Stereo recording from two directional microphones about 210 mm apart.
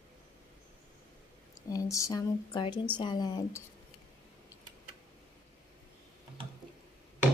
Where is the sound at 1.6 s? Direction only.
15° left (ahead or behind).